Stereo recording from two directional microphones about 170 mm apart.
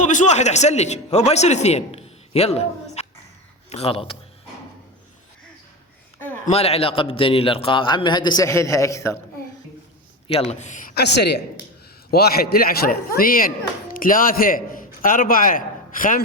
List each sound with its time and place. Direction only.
0.0 s a man's voice: 45° left (ahead or behind)
6.1 s a sound: 10° left (ahead or behind)
6.4 s a man's voice: 35° left (ahead or behind); by 9.1 s 20° left (ahead or behind)
10.2 s a man's voice: 40° left (ahead or behind)
10.9 s a woman's voice: 80° left
12.1 s speech: 65° left (ahead or behind)